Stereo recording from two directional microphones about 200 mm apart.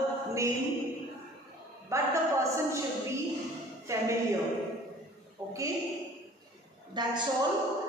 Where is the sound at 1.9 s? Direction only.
15° right (ahead or behind).